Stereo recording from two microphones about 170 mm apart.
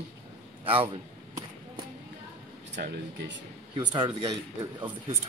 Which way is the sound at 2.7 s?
90° right.